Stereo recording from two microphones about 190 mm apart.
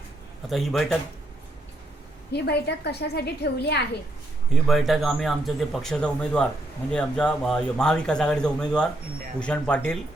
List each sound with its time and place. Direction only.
0.5 s speech: centre (ahead or behind)
2.3 s a woman's voice: 60° left (ahead or behind)
4.5 s speech: centre (ahead or behind)